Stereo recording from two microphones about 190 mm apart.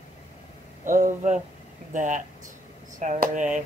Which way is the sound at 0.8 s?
45° right (ahead or behind).